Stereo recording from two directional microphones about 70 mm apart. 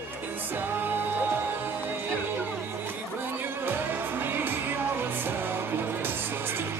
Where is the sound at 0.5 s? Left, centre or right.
Right.